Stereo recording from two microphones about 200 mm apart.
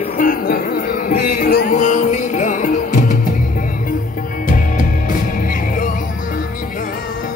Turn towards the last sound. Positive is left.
turn(degrees=40)  # may be behind; listen again after turning